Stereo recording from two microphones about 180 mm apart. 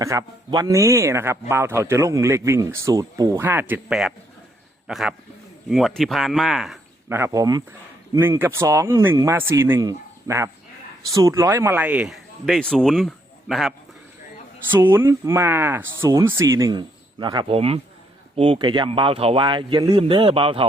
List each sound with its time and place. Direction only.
0.0 s a man's voice: 20° right (ahead or behind); by 6.7 s centre (ahead or behind)
7.1 s a man's voice: 15° right (ahead or behind); by 13.7 s centre (ahead or behind)
14.7 s a man's voice: 10° right (ahead or behind); by 20.7 s 30° right (ahead or behind)